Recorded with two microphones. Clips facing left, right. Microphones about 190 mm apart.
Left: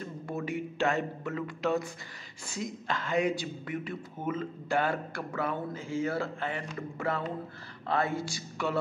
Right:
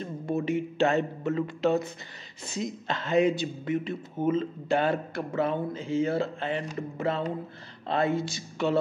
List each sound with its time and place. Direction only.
0.0 s speech: 20° right (ahead or behind)